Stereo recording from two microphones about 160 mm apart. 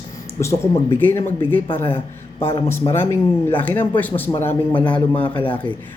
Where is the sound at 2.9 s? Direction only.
15° left (ahead or behind).